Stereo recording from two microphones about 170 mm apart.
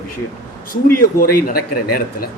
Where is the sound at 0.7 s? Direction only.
60° left (ahead or behind).